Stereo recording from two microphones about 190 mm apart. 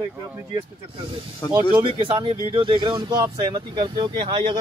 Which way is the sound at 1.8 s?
30° right (ahead or behind).